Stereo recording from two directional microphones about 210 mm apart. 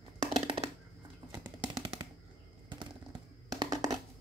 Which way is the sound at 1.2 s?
20° right (ahead or behind).